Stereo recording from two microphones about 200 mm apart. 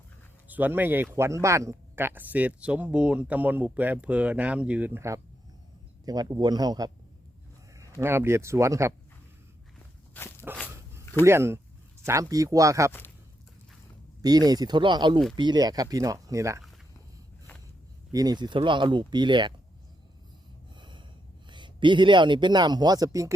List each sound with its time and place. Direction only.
0.4 s a man's voice: 10° right (ahead or behind)
10.2 s walk: 10° left (ahead or behind)
11.3 s speech: 10° right (ahead or behind)
14.2 s a man's voice: 20° right (ahead or behind)
18.1 s a man's voice: 20° right (ahead or behind)
20.7 s snort: 25° right (ahead or behind)
21.5 s a man's voice: 25° right (ahead or behind)